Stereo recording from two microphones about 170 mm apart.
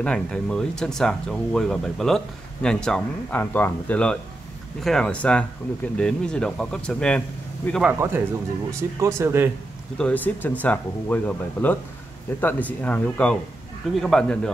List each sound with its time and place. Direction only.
0.0 s speech: 5° left (ahead or behind)
7.8 s speech: 10° right (ahead or behind)
9.9 s speech: 10° left (ahead or behind)